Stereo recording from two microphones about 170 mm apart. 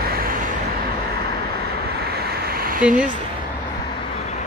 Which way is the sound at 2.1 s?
70° right (ahead or behind).